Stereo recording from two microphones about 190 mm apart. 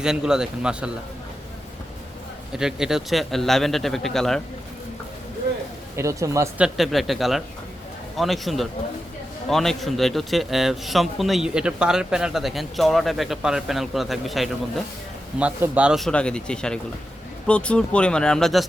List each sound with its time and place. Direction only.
0.0 s a man's voice: 5° right (ahead or behind)
2.5 s a man's voice: 5° right (ahead or behind)
6.0 s speech: 15° right (ahead or behind)
6.7 s a man's voice: centre (ahead or behind)